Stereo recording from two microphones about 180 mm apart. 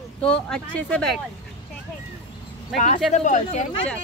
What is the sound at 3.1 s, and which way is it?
Speech, 40° left (ahead or behind).